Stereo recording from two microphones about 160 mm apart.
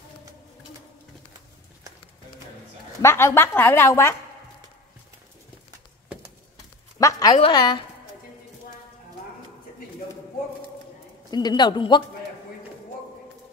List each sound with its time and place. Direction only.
3.0 s a woman's voice: 15° left (ahead or behind)
7.0 s a sound: 20° left (ahead or behind)
7.3 s a man's voice: 30° left (ahead or behind)
11.2 s a man's voice: 25° left (ahead or behind)